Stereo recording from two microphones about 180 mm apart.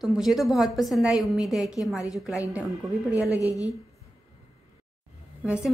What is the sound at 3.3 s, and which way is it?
Speech, 20° left (ahead or behind).